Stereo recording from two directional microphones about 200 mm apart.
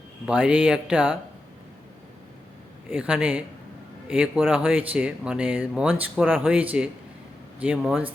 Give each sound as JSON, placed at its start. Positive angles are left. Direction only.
{"t": 0.3, "sound": "speech", "side_deg": -5}
{"t": 2.9, "sound": "speech", "side_deg": -5}